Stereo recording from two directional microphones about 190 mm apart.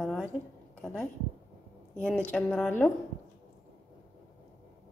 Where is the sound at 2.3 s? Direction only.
5° left (ahead or behind).